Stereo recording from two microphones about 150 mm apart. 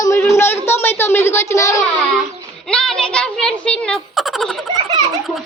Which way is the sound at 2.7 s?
5° left (ahead or behind).